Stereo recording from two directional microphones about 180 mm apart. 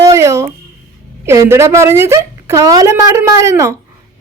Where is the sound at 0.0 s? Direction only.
15° right (ahead or behind).